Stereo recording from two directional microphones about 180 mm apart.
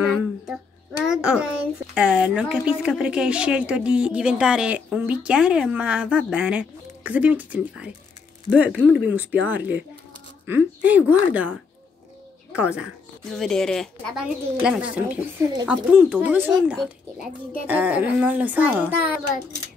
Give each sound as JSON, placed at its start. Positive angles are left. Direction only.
{"t": 0.0, "sound": "a woman's voice", "side_deg": -5}
{"t": 12.5, "sound": "a child's voice", "side_deg": -5}